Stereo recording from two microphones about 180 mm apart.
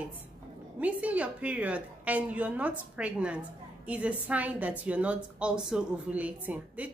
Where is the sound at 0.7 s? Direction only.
10° right (ahead or behind).